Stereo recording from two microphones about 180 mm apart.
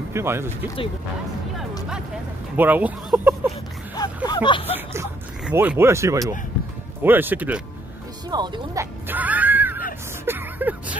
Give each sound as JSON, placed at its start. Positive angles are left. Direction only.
{"t": 0.1, "sound": "speech", "side_deg": -15}
{"t": 2.5, "sound": "speech", "side_deg": -10}
{"t": 4.3, "sound": "speech", "side_deg": 25}
{"t": 4.7, "sound": "speech", "side_deg": -10}
{"t": 8.3, "sound": "speech", "side_deg": -20}
{"t": 9.0, "sound": "music", "side_deg": -10}